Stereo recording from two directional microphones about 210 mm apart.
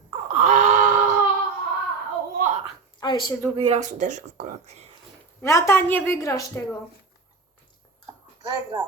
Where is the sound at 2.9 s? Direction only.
20° left (ahead or behind).